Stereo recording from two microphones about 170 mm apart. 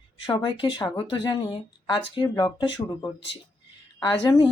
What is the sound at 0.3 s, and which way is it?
Speech, 30° left (ahead or behind).